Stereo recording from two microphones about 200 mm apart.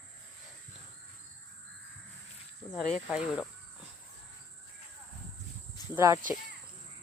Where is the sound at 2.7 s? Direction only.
Centre (ahead or behind).